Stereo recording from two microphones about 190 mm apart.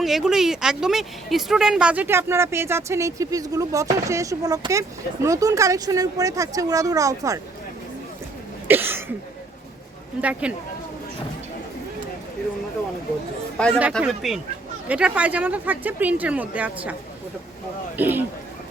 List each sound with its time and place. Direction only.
0.0 s a woman's voice: centre (ahead or behind); by 7.3 s 15° right (ahead or behind)
8.6 s a sound: 10° right (ahead or behind)
10.2 s a woman's voice: 5° right (ahead or behind)
13.6 s a woman's voice: 5° left (ahead or behind)
17.9 s a woman's voice: 10° right (ahead or behind)